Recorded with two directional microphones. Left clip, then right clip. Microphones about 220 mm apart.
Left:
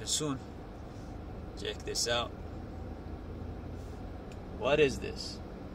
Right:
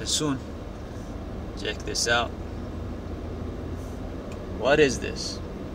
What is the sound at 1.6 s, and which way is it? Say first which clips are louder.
Speech: right 6 dB; 15° left (ahead or behind).